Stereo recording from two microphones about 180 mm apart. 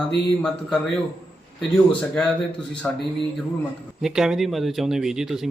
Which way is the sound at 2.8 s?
5° left (ahead or behind).